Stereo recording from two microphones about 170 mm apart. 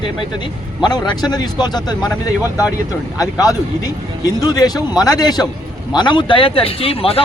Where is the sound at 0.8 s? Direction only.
25° left (ahead or behind).